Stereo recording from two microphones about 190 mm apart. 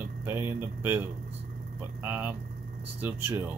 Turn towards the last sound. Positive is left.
turn(degrees=-10)  # may be behind; listen again after turning